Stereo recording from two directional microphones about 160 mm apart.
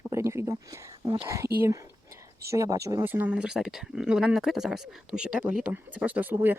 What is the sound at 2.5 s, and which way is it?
Speech, 20° right (ahead or behind).